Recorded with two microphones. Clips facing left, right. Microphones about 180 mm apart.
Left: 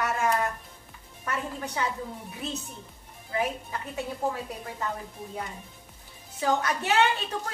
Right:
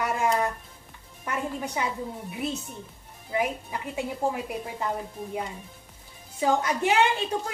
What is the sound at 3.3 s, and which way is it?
A woman's voice, 15° right (ahead or behind).